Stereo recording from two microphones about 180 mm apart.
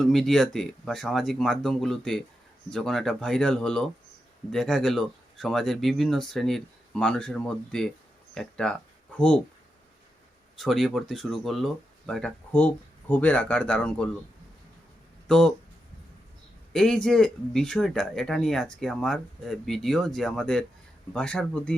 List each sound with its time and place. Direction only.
0.0 s speech: centre (ahead or behind)
10.6 s speech: centre (ahead or behind)
15.3 s speech: 5° left (ahead or behind)
16.7 s speech: 5° left (ahead or behind)